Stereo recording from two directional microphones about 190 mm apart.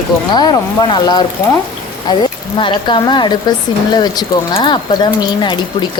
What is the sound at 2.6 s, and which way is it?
Speech, 25° left (ahead or behind).